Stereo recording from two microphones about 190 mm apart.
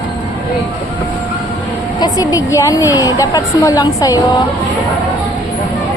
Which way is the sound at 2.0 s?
20° left (ahead or behind).